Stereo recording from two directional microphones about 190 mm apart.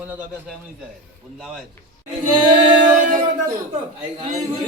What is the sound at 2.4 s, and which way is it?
Singing, 25° right (ahead or behind).